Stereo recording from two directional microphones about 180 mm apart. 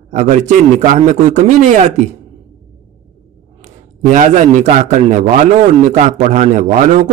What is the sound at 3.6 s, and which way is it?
A man's voice, 40° right (ahead or behind).